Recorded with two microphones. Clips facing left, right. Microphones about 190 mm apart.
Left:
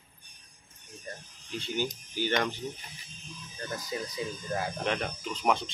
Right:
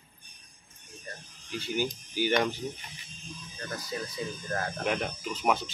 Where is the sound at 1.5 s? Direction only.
5° right (ahead or behind).